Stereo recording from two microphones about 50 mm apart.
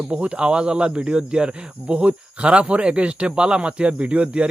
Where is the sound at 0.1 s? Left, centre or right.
Right.